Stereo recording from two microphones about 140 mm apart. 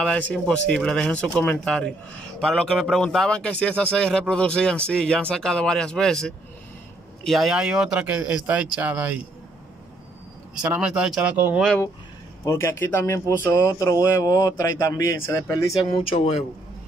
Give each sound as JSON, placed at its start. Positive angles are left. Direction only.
{"t": 0.0, "sound": "a man's voice", "side_deg": 5}
{"t": 10.5, "sound": "speech", "side_deg": -5}
{"t": 12.4, "sound": "speech", "side_deg": 20}
{"t": 16.1, "sound": "a man's voice", "side_deg": 50}